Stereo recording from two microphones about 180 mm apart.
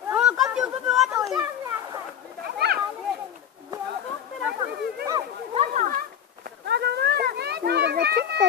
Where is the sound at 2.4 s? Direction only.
60° right (ahead or behind).